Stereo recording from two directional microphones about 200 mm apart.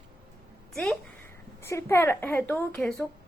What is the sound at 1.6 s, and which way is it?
A woman's voice, 15° left (ahead or behind).